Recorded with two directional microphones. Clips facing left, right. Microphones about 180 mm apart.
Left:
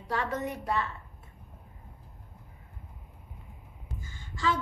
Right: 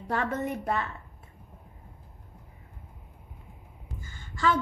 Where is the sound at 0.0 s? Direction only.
50° right (ahead or behind).